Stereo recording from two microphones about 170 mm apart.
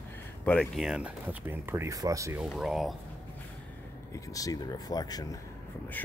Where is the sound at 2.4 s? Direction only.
Centre (ahead or behind).